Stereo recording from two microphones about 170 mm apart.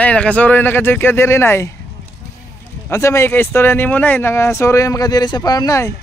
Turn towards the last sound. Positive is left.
turn(degrees=20)  # may be behind; listen again after turning